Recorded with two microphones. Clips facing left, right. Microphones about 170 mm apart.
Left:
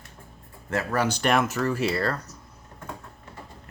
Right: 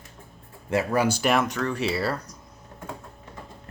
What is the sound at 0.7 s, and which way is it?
Speech, 15° right (ahead or behind).